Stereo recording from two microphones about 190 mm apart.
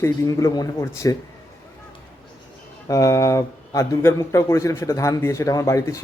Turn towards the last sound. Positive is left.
turn(degrees=15)  # may be behind; listen again after turning